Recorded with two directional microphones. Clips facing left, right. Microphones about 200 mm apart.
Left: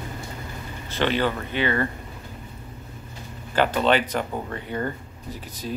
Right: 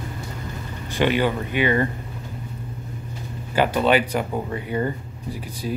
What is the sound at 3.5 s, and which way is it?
Speech, 10° right (ahead or behind).